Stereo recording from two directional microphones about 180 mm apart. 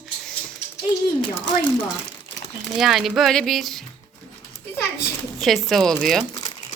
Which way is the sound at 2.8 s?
Centre (ahead or behind).